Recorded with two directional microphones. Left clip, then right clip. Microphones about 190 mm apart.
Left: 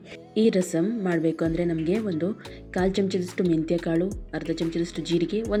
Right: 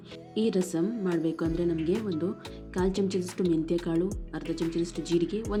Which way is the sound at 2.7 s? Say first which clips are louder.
Left 4 dB; 15° left (ahead or behind).